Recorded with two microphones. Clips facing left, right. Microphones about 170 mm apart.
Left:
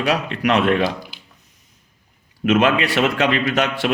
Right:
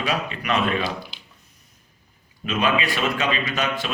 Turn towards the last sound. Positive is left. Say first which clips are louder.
# left 6 dB
turn(degrees=70)  # may be behind; listen again after turning